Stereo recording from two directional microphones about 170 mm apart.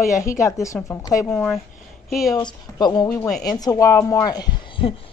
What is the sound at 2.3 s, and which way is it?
Speech, 25° left (ahead or behind).